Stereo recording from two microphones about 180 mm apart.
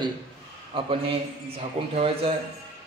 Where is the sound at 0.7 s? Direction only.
30° right (ahead or behind).